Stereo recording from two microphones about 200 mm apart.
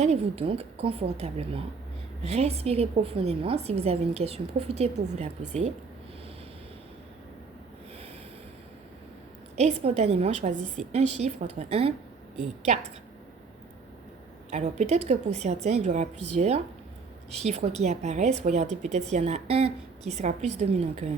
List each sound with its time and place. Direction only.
0.0 s a woman's voice: 30° right (ahead or behind)
9.6 s a woman's voice: 35° right (ahead or behind)
14.5 s a woman's voice: 35° right (ahead or behind)